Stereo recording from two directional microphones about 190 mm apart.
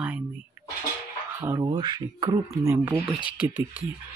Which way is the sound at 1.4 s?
20° right (ahead or behind).